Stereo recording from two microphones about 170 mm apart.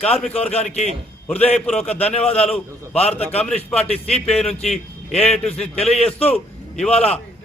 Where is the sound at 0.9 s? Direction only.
10° left (ahead or behind).